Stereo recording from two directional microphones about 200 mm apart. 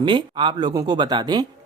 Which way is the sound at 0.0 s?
25° right (ahead or behind).